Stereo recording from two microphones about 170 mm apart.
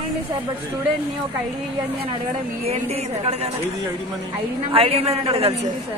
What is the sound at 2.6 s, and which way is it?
Speech, 40° right (ahead or behind).